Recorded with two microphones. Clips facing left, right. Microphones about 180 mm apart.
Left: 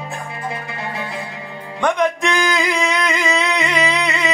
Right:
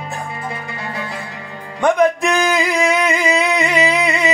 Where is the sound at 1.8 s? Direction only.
10° right (ahead or behind).